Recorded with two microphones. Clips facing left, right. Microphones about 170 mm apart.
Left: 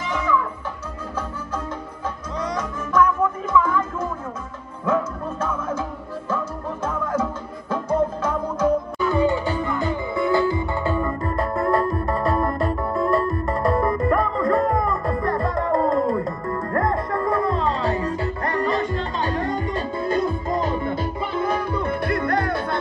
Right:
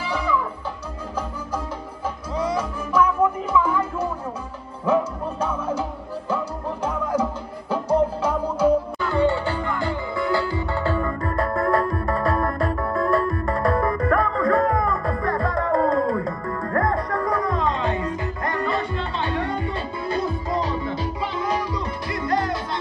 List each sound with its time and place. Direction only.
0.1 s music: 10° right (ahead or behind)
2.3 s music: 10° right (ahead or behind)
9.0 s music: 15° left (ahead or behind)
11.1 s music: centre (ahead or behind)
17.3 s music: 30° left (ahead or behind); by 22.8 s 60° left (ahead or behind)